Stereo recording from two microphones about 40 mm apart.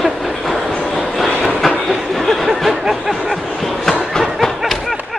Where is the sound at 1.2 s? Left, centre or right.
Centre.